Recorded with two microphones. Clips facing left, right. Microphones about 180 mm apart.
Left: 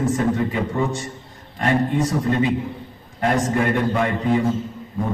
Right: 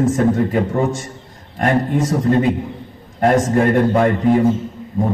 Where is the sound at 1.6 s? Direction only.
45° right (ahead or behind).